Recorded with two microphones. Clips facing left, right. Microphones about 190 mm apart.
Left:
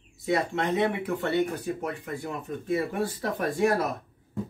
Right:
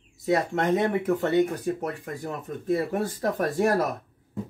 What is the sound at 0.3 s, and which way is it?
Speech, 45° right (ahead or behind).